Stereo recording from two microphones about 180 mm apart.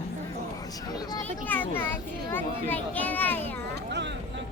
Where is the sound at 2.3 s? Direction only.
10° left (ahead or behind).